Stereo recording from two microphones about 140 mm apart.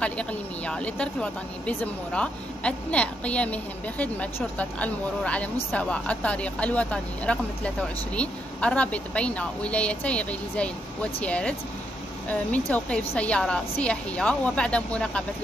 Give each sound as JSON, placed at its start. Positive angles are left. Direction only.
{"t": 0.0, "sound": "speech", "side_deg": 10}